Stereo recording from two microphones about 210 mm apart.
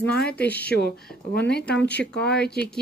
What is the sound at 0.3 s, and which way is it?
Speech, 5° left (ahead or behind).